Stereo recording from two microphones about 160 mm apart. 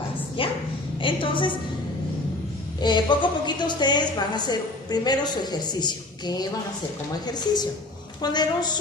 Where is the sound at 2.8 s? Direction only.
30° left (ahead or behind).